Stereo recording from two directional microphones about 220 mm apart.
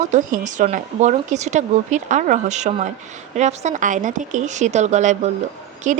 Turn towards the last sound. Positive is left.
turn(degrees=-35)  # may be behind; listen again after turning